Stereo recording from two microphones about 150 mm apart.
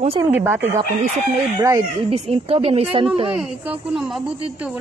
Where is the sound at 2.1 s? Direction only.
40° right (ahead or behind).